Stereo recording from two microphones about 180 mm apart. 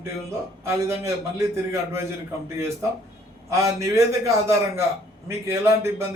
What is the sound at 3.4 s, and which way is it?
A man's voice, 15° right (ahead or behind).